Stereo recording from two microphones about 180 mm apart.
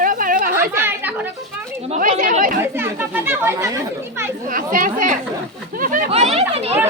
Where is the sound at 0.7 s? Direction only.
10° right (ahead or behind).